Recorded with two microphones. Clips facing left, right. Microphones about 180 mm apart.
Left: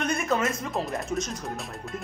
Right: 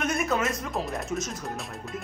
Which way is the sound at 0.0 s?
Centre (ahead or behind).